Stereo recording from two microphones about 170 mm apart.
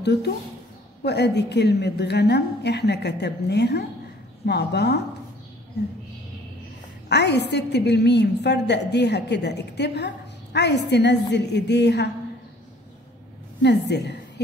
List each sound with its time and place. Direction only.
0.0 s a woman's voice: 80° left
7.1 s a woman's voice: 80° left
13.6 s a woman's voice: 85° left